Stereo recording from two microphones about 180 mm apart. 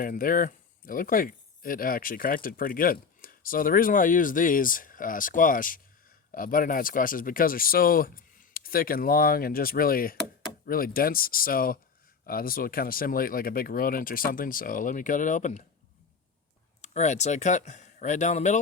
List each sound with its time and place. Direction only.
0.0 s speech: 50° left (ahead or behind)
16.8 s speech: 40° left (ahead or behind)